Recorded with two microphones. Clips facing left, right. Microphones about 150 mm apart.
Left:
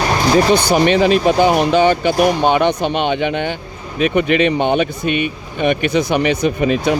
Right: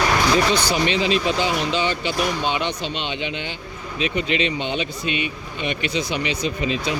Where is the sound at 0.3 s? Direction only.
45° left (ahead or behind).